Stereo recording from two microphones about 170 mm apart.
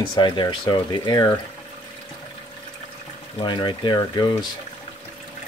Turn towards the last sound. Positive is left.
turn(degrees=25)  # may be behind; listen again after turning